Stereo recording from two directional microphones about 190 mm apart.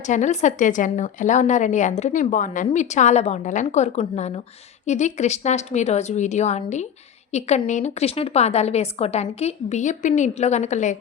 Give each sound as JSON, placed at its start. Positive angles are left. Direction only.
{"t": 0.1, "sound": "a woman's voice", "side_deg": 40}